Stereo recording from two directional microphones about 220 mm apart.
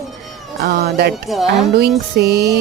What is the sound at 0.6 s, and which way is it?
Speech, 45° right (ahead or behind).